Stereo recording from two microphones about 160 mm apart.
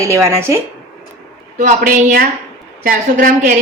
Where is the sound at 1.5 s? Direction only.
50° right (ahead or behind).